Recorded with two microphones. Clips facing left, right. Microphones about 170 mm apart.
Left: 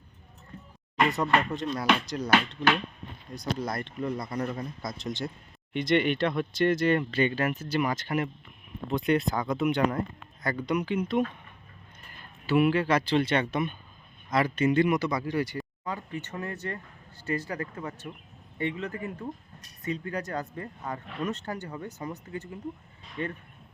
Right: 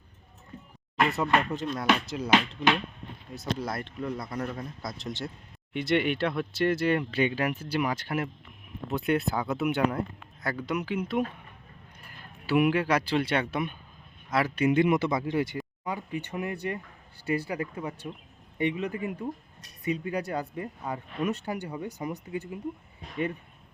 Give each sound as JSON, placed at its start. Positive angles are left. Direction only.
{"t": 0.9, "sound": "speech", "side_deg": 0}